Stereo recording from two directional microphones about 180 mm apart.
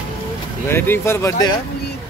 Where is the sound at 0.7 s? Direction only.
15° left (ahead or behind).